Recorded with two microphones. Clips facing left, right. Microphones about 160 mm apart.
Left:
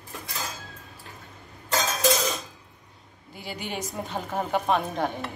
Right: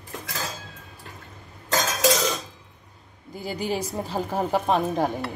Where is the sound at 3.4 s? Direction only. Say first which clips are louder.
Right 6 dB; 40° right (ahead or behind).